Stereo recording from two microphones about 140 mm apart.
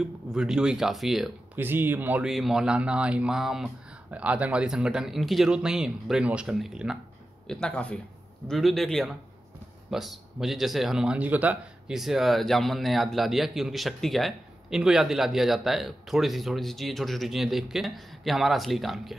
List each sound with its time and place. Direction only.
0.0 s speech: 5° right (ahead or behind)
1.6 s speech: 15° right (ahead or behind)
2.2 s speech: centre (ahead or behind)
7.4 s speech: 5° left (ahead or behind)